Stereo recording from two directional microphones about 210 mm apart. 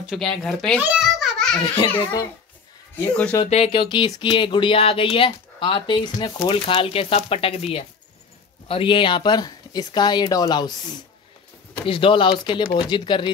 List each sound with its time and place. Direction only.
0.0 s speech: centre (ahead or behind)
0.7 s babbling: 5° right (ahead or behind)
3.1 s speech: 5° left (ahead or behind)
3.4 s speech: 30° left (ahead or behind)